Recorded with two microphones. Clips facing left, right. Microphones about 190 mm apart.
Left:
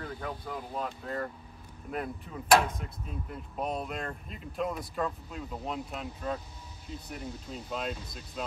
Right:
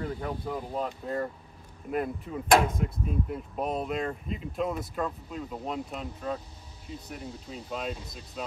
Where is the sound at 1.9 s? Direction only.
Centre (ahead or behind).